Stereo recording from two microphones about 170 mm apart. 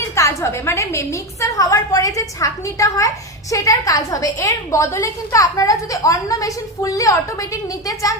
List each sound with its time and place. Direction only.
0.2 s a woman's voice: 15° left (ahead or behind)